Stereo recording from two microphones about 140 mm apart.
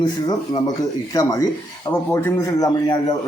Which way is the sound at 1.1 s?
25° left (ahead or behind).